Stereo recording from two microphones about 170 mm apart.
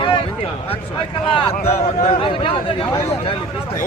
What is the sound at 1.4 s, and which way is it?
Speech, 35° left (ahead or behind).